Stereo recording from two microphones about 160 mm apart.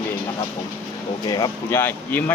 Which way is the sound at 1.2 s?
25° left (ahead or behind).